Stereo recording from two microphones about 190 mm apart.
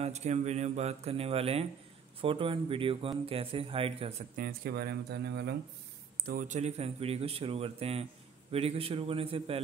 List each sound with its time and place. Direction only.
0.0 s a man's voice: 35° right (ahead or behind)
4.4 s speech: 55° right (ahead or behind)
6.2 s a man's voice: 45° right (ahead or behind)